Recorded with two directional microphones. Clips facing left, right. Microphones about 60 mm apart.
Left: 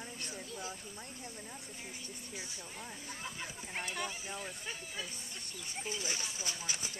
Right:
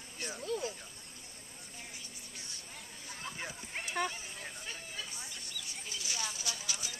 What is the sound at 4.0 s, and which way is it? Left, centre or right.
Speech, right.